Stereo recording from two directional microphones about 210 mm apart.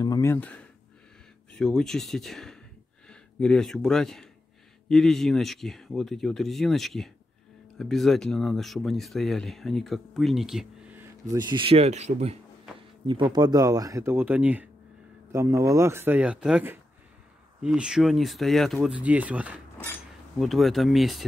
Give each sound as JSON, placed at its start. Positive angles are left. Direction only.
{"t": 0.0, "sound": "speech", "side_deg": 15}
{"t": 19.8, "sound": "speech", "side_deg": 5}